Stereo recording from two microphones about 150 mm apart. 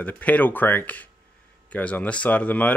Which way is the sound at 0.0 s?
10° left (ahead or behind).